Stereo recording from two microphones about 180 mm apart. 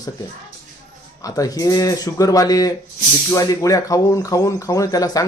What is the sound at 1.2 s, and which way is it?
Speech, 20° left (ahead or behind).